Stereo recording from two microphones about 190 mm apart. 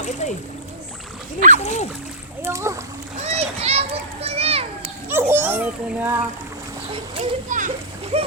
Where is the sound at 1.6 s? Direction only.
35° left (ahead or behind).